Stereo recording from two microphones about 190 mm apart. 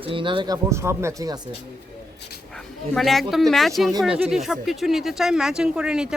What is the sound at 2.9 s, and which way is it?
Speech, centre (ahead or behind).